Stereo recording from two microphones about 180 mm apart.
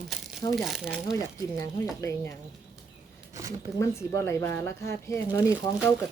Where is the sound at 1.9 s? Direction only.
15° left (ahead or behind).